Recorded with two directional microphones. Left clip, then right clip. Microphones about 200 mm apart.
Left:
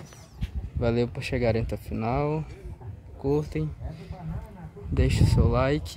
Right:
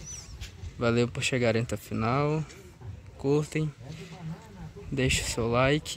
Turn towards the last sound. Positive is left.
turn(degrees=0)  # may be behind; listen again after turning